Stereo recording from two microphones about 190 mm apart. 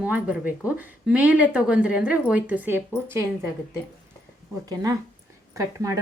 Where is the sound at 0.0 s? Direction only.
10° right (ahead or behind).